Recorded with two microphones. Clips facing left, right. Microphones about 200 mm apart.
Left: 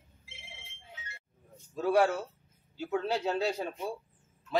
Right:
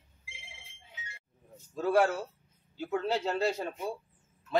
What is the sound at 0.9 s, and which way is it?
Chink, 15° right (ahead or behind).